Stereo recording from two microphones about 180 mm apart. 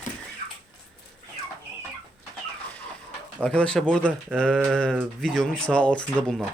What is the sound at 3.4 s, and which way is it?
A man's voice, 5° left (ahead or behind).